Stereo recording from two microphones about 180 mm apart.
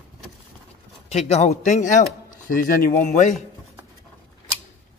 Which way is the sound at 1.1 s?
35° left (ahead or behind).